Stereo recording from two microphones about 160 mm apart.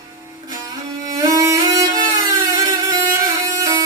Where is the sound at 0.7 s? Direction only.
20° right (ahead or behind).